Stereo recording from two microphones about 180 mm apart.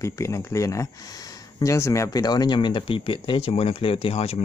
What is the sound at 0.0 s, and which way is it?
Speech, 15° left (ahead or behind).